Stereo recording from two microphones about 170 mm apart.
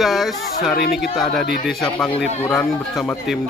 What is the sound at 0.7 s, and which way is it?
Speech, 70° left (ahead or behind).